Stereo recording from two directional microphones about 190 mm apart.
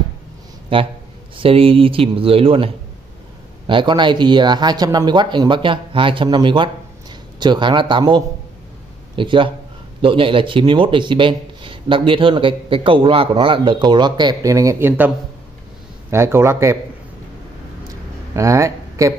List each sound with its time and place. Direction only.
0.7 s speech: 30° right (ahead or behind)
18.3 s speech: 15° right (ahead or behind)